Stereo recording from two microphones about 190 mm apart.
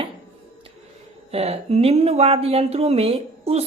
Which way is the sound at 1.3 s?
30° right (ahead or behind).